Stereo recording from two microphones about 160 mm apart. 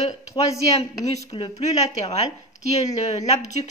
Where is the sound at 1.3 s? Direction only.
35° left (ahead or behind).